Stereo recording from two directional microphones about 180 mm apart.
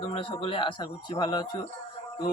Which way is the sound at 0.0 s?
30° left (ahead or behind).